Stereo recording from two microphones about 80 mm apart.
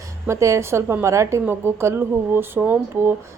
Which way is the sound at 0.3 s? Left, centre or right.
Right.